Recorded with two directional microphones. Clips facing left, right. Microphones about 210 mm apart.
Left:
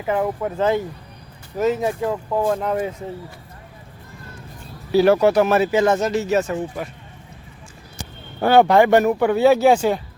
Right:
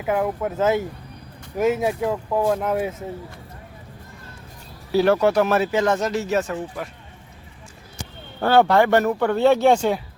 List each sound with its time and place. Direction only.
0.0 s speech: 5° right (ahead or behind)
4.9 s speech: centre (ahead or behind)
8.4 s speech: 15° left (ahead or behind)